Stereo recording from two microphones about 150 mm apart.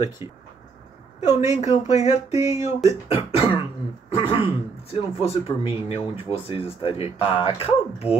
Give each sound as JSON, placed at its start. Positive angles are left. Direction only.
{"t": 0.2, "sound": "speech", "side_deg": -20}
{"t": 1.2, "sound": "speech", "side_deg": 50}
{"t": 2.4, "sound": "speech", "side_deg": -20}
{"t": 3.1, "sound": "speech", "side_deg": 40}